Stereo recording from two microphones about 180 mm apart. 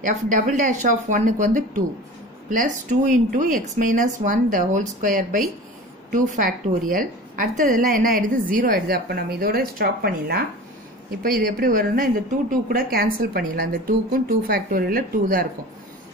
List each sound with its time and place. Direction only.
0.0 s a woman's voice: 45° right (ahead or behind)